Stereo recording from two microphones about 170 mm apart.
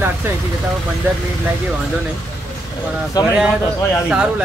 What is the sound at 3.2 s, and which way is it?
Speech, 20° left (ahead or behind).